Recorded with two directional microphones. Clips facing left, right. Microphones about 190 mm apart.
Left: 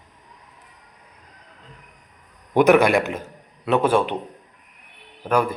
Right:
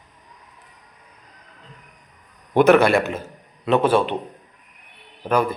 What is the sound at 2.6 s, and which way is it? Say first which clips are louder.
A man's voice: right 1 dB; 15° left (ahead or behind).